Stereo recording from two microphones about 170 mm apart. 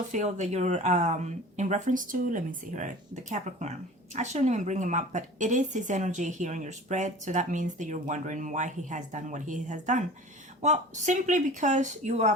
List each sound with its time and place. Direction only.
0.1 s speech: 45° right (ahead or behind)